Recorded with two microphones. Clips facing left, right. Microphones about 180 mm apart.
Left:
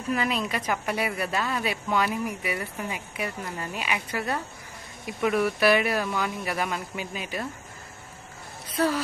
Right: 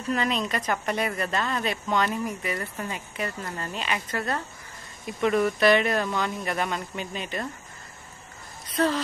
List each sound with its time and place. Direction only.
0.1 s a woman's voice: 5° left (ahead or behind)
8.7 s speech: 10° left (ahead or behind)